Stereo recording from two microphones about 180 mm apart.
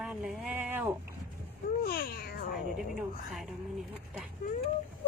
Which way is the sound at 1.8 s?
60° left (ahead or behind).